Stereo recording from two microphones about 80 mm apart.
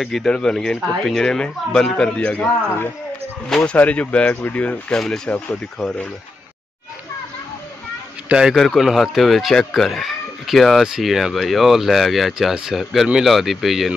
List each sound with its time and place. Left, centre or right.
0.0 s speech: centre
3.4 s speech: centre
3.7 s speech: centre
8.3 s a man's voice: centre
8.5 s speech: centre